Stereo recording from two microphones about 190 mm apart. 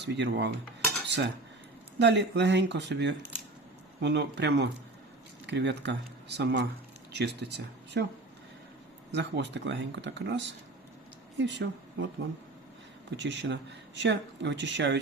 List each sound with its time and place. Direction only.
0.0 s speech: 65° right (ahead or behind)
1.0 s cutlery: 65° right (ahead or behind)
2.0 s speech: 65° right (ahead or behind)
9.1 s a woman's voice: 65° right (ahead or behind)
13.1 s speech: 70° right (ahead or behind)